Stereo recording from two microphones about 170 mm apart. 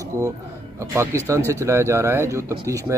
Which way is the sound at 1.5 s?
15° right (ahead or behind).